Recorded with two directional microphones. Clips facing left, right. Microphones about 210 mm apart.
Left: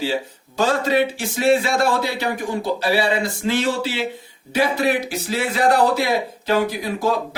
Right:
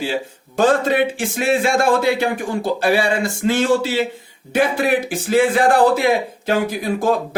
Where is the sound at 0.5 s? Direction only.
50° right (ahead or behind).